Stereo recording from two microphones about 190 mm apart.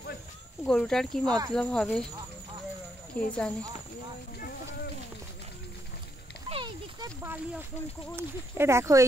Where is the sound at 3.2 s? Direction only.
5° left (ahead or behind).